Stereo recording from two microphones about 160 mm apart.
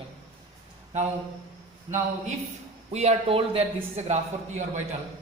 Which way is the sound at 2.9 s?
40° right (ahead or behind).